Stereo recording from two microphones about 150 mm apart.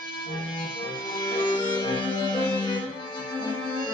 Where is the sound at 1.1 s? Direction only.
30° left (ahead or behind).